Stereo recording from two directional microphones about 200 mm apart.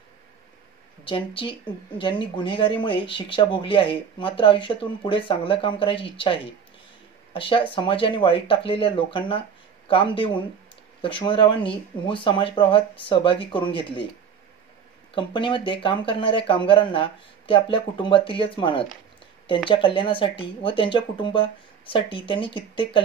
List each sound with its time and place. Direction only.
1.0 s speech: 25° left (ahead or behind)
15.1 s speech: 25° left (ahead or behind)